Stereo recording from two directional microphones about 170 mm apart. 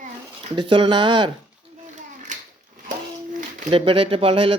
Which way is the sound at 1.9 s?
45° right (ahead or behind).